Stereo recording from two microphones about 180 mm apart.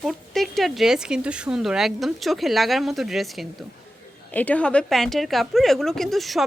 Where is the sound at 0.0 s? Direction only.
Centre (ahead or behind).